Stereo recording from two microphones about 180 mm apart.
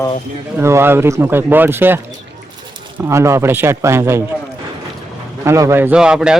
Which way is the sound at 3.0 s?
15° right (ahead or behind).